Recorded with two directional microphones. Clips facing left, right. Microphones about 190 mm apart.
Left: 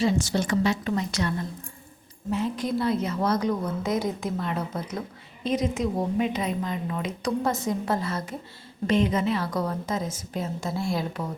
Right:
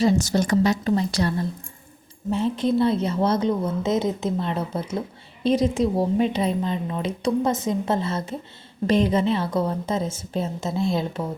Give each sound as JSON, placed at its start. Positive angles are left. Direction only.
{"t": 0.0, "sound": "a woman's voice", "side_deg": -40}